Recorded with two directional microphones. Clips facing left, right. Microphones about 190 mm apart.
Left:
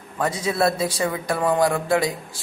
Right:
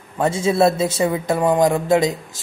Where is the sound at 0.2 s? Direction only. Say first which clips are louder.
Right 5 dB; 25° right (ahead or behind).